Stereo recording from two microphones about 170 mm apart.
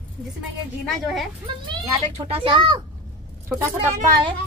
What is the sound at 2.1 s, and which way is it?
Speech, 35° right (ahead or behind).